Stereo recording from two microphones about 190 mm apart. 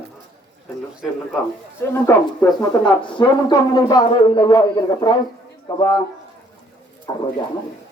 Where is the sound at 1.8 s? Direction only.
10° left (ahead or behind).